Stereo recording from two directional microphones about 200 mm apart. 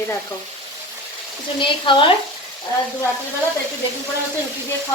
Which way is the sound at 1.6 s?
25° left (ahead or behind).